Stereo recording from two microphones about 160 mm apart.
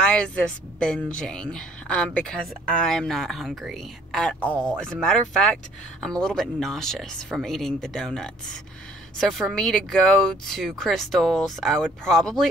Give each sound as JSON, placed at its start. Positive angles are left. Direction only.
{"t": 0.0, "sound": "a woman's voice", "side_deg": 5}